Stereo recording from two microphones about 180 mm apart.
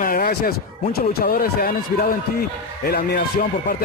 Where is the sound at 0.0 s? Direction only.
50° left (ahead or behind).